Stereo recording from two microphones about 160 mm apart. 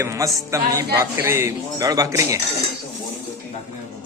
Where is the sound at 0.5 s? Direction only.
20° right (ahead or behind).